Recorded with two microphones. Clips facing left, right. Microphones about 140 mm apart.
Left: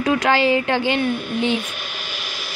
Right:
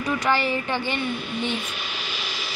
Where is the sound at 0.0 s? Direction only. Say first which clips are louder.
Left 6 dB; 90° left.